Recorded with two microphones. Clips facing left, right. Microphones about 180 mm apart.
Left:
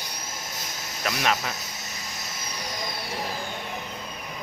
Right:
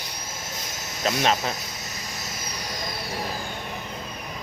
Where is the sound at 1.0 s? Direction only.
30° right (ahead or behind).